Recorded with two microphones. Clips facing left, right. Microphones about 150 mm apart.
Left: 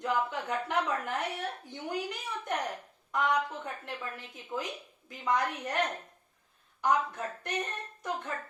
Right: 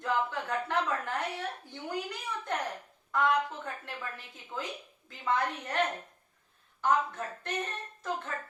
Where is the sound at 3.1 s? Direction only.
20° left (ahead or behind).